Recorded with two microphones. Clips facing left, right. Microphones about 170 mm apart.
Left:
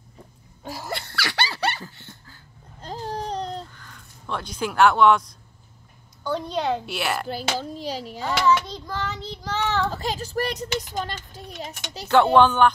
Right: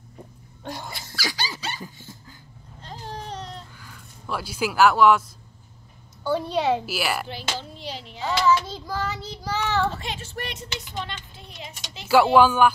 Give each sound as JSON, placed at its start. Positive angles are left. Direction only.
{"t": 0.7, "sound": "child singing", "side_deg": 5}
{"t": 0.9, "sound": "dog", "side_deg": 65}
{"t": 2.8, "sound": "babbling", "side_deg": 40}
{"t": 3.7, "sound": "a sound", "side_deg": -5}
{"t": 6.2, "sound": "child singing", "side_deg": -5}
{"t": 7.2, "sound": "speech", "side_deg": 40}
{"t": 8.2, "sound": "child singing", "side_deg": 0}
{"t": 9.9, "sound": "speech", "side_deg": 40}
{"t": 12.1, "sound": "child singing", "side_deg": -5}